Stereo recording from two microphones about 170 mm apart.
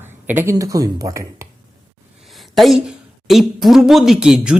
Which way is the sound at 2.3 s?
Centre (ahead or behind).